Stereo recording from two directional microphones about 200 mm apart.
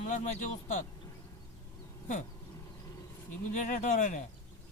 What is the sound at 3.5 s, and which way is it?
Speech, 35° left (ahead or behind).